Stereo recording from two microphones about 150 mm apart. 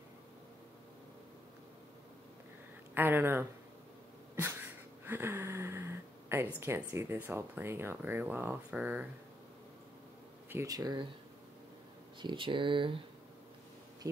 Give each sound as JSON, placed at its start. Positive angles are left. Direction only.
{"t": 2.9, "sound": "speech", "side_deg": -15}
{"t": 4.4, "sound": "a sound", "side_deg": -15}
{"t": 6.6, "sound": "speech", "side_deg": -15}
{"t": 10.5, "sound": "speech", "side_deg": -20}
{"t": 12.2, "sound": "speech", "side_deg": -35}